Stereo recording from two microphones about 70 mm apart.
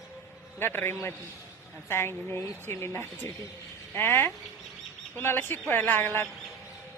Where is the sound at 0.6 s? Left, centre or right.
Left.